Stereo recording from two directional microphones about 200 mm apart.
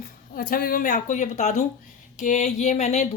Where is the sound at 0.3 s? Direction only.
45° left (ahead or behind).